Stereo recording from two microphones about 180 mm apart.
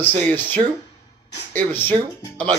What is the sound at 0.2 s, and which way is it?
Speech, 10° left (ahead or behind).